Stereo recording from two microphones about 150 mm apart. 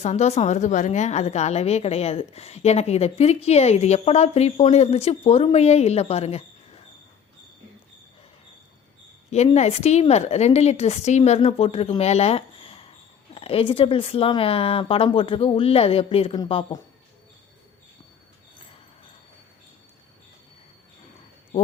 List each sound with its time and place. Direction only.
0.0 s a woman's voice: 45° left (ahead or behind)
9.3 s a woman's voice: 45° left (ahead or behind)